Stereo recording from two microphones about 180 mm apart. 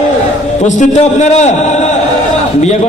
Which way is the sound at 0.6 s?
40° left (ahead or behind).